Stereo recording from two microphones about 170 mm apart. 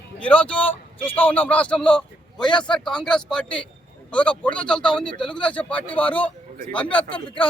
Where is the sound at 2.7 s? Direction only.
5° left (ahead or behind).